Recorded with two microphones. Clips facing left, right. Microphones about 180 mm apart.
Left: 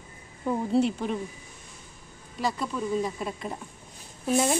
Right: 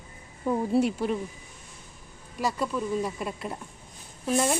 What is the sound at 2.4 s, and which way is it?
Speech, 5° right (ahead or behind).